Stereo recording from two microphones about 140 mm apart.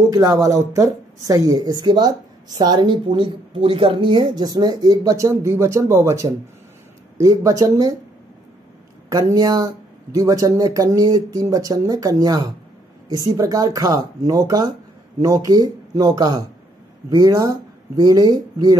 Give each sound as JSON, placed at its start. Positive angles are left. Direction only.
{"t": 0.1, "sound": "speech", "side_deg": -25}
{"t": 9.1, "sound": "speech", "side_deg": -25}